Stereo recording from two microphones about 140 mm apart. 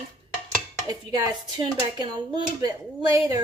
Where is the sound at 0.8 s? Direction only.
30° right (ahead or behind).